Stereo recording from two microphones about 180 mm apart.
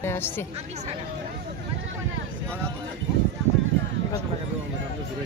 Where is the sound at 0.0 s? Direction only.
15° left (ahead or behind).